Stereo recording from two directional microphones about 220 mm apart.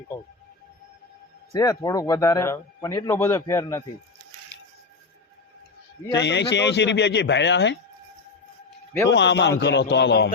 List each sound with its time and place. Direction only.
1.5 s a man's voice: 15° left (ahead or behind)
6.1 s a man's voice: 50° left (ahead or behind)
9.0 s a man's voice: 55° left (ahead or behind)